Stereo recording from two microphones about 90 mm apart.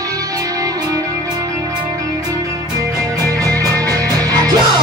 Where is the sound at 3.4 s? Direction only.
40° right (ahead or behind).